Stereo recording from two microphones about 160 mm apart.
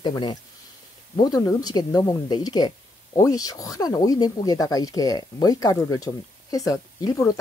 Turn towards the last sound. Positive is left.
turn(degrees=20)  # may be behind; listen again after turning